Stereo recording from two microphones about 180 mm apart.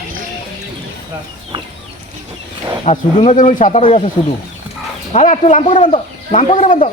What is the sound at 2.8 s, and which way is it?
Speech, 35° left (ahead or behind).